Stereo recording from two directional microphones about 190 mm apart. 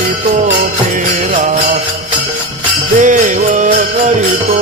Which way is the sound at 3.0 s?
40° right (ahead or behind).